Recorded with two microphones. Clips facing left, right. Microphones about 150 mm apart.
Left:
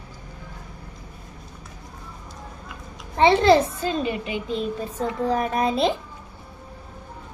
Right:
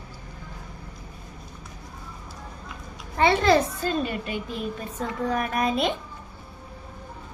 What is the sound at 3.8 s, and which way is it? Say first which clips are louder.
A woman's voice: left 2 dB; 15° left (ahead or behind).